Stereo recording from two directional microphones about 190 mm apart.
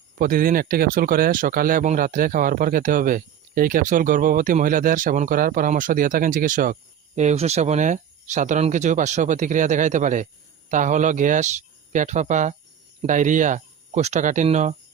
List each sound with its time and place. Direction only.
0.2 s speech: 50° right (ahead or behind)